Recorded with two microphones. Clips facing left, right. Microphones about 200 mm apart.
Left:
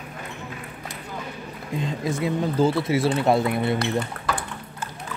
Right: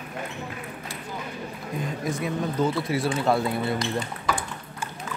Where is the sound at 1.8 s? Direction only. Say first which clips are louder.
Left 3 dB; 25° left (ahead or behind).